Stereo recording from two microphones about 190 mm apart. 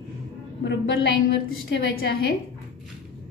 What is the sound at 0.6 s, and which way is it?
A woman's voice, 75° left (ahead or behind).